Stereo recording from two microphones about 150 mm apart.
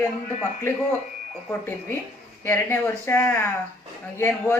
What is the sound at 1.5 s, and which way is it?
Speech, 15° left (ahead or behind).